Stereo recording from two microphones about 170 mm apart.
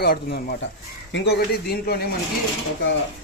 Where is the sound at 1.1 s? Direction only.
85° left; by 2.0 s 70° left (ahead or behind).